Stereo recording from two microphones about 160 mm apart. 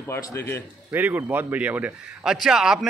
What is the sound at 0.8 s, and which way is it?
A man's voice, 10° right (ahead or behind).